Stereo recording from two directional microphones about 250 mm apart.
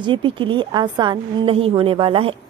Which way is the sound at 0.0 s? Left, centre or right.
Centre.